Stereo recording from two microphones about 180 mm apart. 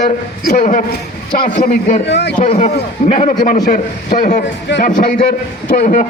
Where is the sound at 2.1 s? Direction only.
70° left (ahead or behind).